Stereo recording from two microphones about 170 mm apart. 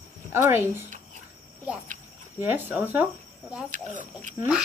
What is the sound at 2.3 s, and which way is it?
Speech, 10° right (ahead or behind).